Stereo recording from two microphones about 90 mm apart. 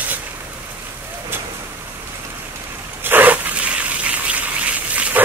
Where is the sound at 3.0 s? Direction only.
20° right (ahead or behind).